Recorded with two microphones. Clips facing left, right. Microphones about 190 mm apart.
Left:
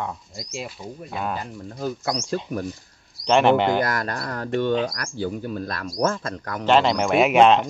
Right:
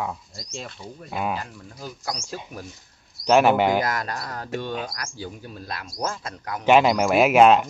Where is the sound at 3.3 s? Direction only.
5° right (ahead or behind).